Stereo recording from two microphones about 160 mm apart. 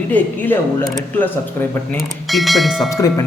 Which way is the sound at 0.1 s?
10° left (ahead or behind).